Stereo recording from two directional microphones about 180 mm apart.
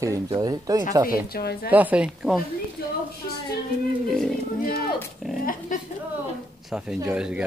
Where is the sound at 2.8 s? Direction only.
60° left (ahead or behind).